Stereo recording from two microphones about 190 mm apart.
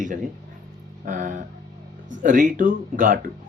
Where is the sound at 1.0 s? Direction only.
45° right (ahead or behind).